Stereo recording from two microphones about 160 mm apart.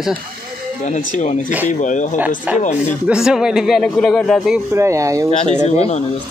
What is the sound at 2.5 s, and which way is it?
Speech, 10° right (ahead or behind).